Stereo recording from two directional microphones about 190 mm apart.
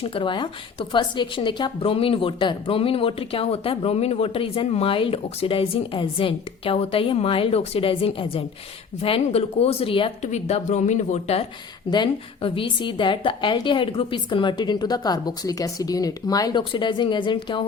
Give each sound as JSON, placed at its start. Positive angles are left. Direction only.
{"t": 0.0, "sound": "a woman's voice", "side_deg": 25}
{"t": 11.9, "sound": "a woman's voice", "side_deg": 25}